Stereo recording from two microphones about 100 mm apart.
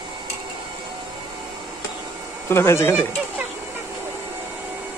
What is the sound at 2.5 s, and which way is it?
Speech, 25° left (ahead or behind).